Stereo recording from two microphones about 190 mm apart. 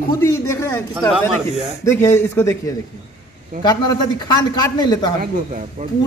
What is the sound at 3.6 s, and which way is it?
A man's voice, 20° left (ahead or behind).